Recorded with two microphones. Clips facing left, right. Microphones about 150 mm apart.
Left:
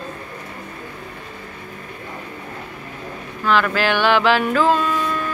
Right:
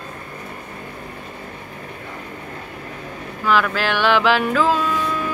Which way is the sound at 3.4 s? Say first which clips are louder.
Left 1 dB; 5° right (ahead or behind).